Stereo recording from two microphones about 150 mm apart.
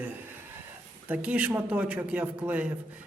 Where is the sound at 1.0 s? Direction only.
10° right (ahead or behind).